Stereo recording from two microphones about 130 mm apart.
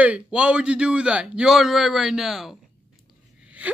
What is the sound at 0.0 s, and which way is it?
Screaming, 10° right (ahead or behind).